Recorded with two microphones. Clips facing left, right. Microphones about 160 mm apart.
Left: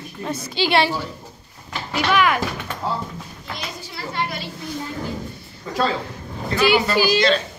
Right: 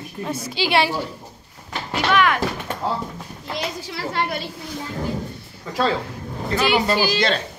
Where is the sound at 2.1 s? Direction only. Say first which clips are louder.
Even; 5° left (ahead or behind).